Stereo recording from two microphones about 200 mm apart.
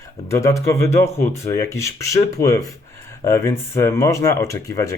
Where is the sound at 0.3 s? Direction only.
15° left (ahead or behind).